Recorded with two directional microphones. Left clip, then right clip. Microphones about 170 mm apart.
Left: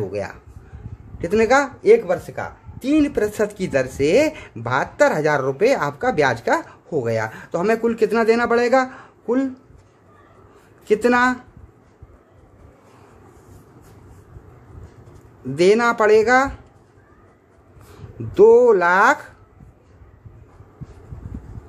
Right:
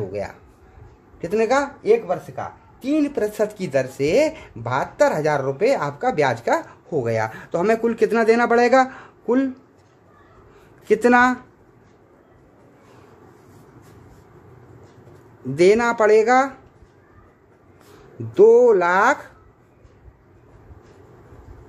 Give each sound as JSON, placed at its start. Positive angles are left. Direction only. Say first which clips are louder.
{"t": 0.1, "sound": "speech", "louder": "left 1 dB", "side_deg": 15}
{"t": 10.9, "sound": "speech", "louder": "right 1 dB", "side_deg": -10}
{"t": 15.5, "sound": "speech", "louder": "even", "side_deg": 0}
{"t": 18.3, "sound": "speech", "louder": "left 1 dB", "side_deg": 5}